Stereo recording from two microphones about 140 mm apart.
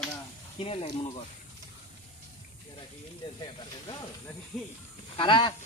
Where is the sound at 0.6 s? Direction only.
45° left (ahead or behind).